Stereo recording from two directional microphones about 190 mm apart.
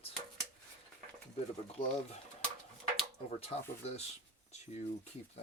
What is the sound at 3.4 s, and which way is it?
Speech, 35° left (ahead or behind).